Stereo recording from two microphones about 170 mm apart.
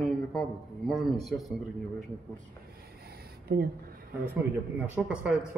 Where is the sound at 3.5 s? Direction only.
65° right (ahead or behind).